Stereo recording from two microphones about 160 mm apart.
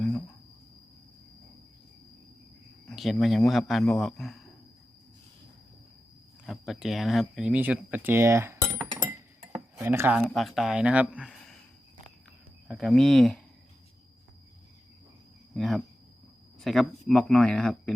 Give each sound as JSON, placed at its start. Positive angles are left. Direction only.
{"t": 2.9, "sound": "a man's voice", "side_deg": 0}
{"t": 6.4, "sound": "speech", "side_deg": 0}
{"t": 9.7, "sound": "speech", "side_deg": -15}
{"t": 10.2, "sound": "a man's voice", "side_deg": 0}
{"t": 12.6, "sound": "a man's voice", "side_deg": 0}
{"t": 15.5, "sound": "a man's voice", "side_deg": 0}